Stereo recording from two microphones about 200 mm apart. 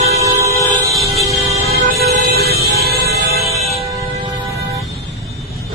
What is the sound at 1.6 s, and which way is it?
Music, 50° right (ahead or behind).